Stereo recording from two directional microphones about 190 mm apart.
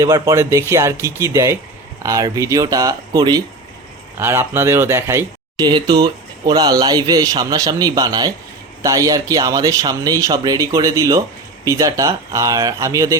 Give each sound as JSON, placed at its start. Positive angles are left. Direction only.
{"t": 0.0, "sound": "speech", "side_deg": -15}